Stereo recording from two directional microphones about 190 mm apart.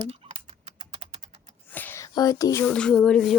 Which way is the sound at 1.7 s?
10° left (ahead or behind).